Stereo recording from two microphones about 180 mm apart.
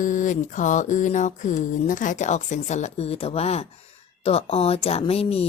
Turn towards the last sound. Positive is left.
turn(degrees=35)  # may be behind; listen again after turning